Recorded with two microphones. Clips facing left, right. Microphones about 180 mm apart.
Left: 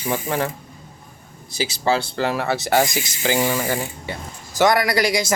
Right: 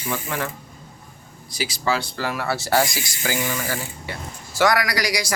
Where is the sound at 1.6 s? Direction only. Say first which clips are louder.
Left 3 dB; 25° left (ahead or behind).